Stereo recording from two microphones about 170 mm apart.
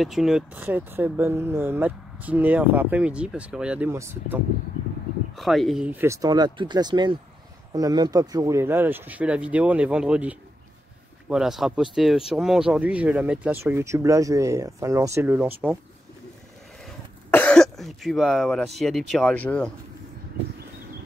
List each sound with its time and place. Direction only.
0.0 s speech: centre (ahead or behind)
5.4 s speech: centre (ahead or behind)
17.3 s speech: 10° left (ahead or behind)